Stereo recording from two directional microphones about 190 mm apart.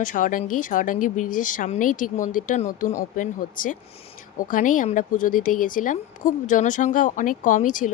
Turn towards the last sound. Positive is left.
turn(degrees=45)  # may be behind; listen again after turning